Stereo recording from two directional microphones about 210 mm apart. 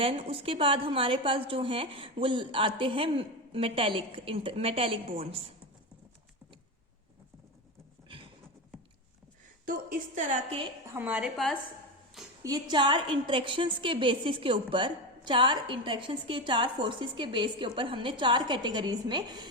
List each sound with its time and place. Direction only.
0.0 s a woman's voice: 25° right (ahead or behind)
8.0 s a sound: 25° right (ahead or behind)
9.6 s a woman's voice: 40° right (ahead or behind)
10.9 s a woman's voice: 5° right (ahead or behind)
12.4 s a woman's voice: 15° right (ahead or behind)